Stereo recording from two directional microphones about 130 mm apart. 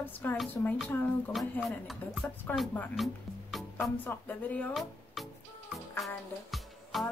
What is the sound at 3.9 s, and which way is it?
Speech, 15° left (ahead or behind).